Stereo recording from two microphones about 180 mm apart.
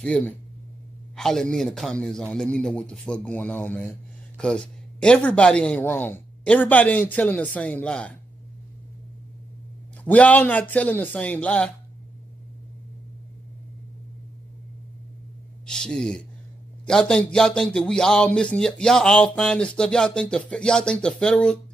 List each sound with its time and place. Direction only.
0.0 s speech: 5° left (ahead or behind)
10.0 s speech: 10° left (ahead or behind)
15.6 s speech: 5° left (ahead or behind)